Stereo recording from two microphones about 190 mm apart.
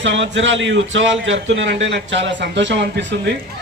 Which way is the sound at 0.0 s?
75° right (ahead or behind).